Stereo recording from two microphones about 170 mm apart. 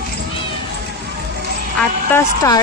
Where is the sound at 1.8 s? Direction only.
15° left (ahead or behind).